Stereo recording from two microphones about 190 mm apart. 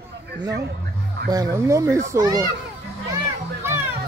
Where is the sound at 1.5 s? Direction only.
15° right (ahead or behind).